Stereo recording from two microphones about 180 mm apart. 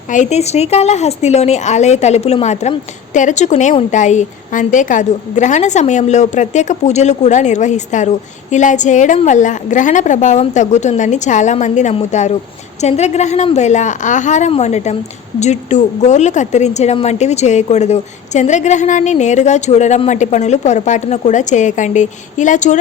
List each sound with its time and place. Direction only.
0.1 s a woman's voice: 40° left (ahead or behind)